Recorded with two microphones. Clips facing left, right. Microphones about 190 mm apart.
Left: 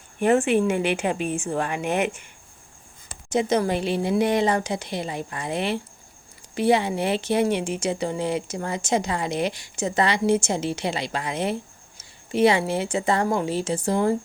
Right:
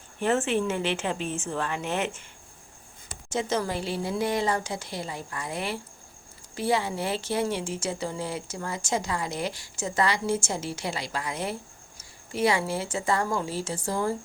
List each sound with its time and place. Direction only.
0.2 s a woman's voice: 15° left (ahead or behind)
3.2 s speech: 15° left (ahead or behind)